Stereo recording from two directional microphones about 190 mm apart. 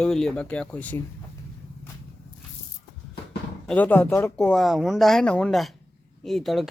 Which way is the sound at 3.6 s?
5° left (ahead or behind).